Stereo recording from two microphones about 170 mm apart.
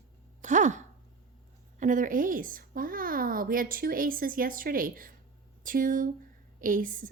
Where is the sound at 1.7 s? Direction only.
50° right (ahead or behind).